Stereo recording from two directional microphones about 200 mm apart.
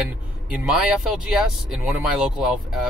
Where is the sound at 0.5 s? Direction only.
5° right (ahead or behind).